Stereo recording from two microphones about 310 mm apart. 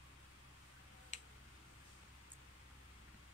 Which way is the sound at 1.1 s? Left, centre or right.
Left.